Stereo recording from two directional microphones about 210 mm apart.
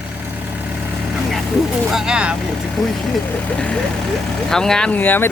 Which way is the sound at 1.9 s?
5° right (ahead or behind).